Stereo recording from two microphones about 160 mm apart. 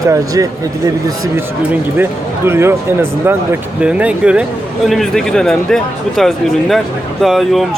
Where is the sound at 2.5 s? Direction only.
15° right (ahead or behind); by 7.7 s centre (ahead or behind).